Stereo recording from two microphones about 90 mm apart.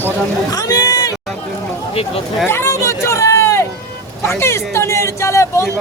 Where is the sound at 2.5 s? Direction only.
30° left (ahead or behind).